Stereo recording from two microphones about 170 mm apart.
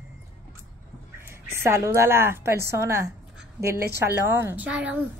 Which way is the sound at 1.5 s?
15° right (ahead or behind).